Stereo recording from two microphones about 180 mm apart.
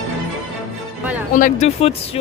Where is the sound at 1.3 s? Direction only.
45° left (ahead or behind).